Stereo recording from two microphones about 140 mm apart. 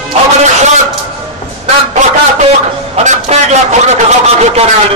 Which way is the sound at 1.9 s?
55° right (ahead or behind).